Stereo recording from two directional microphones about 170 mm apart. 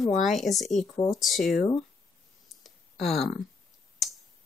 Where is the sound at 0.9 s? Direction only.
20° left (ahead or behind).